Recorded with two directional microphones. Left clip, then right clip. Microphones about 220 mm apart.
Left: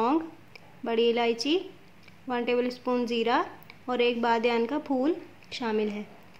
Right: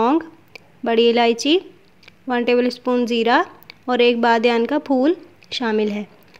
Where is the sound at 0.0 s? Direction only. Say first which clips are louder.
Right 8 dB; 30° right (ahead or behind).